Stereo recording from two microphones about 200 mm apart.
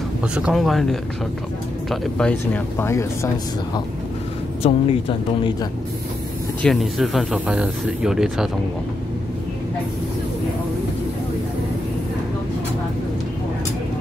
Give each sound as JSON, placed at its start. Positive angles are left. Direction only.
{"t": 0.2, "sound": "speech", "side_deg": -5}
{"t": 4.6, "sound": "speech", "side_deg": 25}
{"t": 6.6, "sound": "speech", "side_deg": 0}